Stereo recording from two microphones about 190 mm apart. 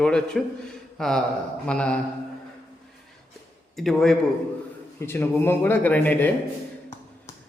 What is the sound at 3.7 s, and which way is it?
Speech, centre (ahead or behind).